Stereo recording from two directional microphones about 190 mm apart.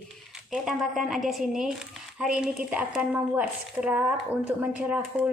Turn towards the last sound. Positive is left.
turn(degrees=-5)  # may be behind; listen again after turning